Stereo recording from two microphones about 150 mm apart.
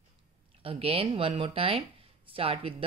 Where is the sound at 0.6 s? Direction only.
40° right (ahead or behind).